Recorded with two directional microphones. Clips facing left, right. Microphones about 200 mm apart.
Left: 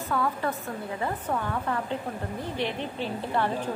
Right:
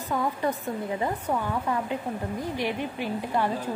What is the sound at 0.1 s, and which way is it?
Speech, 15° right (ahead or behind).